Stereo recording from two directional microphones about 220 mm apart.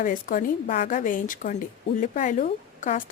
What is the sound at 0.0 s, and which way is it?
Speech, 40° left (ahead or behind).